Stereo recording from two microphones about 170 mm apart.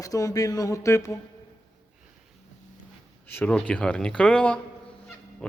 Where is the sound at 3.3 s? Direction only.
10° left (ahead or behind).